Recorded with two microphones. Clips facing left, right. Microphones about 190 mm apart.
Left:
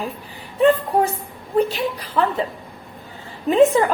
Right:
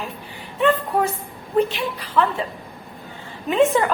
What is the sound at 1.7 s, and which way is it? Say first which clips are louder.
Speech: even; 40° left (ahead or behind).